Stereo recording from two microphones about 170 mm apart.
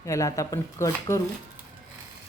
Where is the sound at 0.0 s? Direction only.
20° left (ahead or behind).